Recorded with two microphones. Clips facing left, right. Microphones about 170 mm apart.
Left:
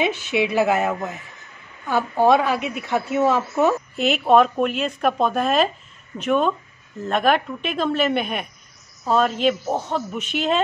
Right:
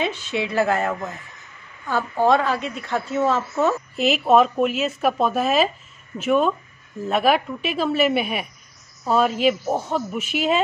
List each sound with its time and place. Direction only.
0.0 s a woman's voice: 15° left (ahead or behind)
3.9 s a woman's voice: centre (ahead or behind)